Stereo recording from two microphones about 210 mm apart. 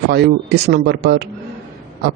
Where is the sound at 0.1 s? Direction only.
50° right (ahead or behind).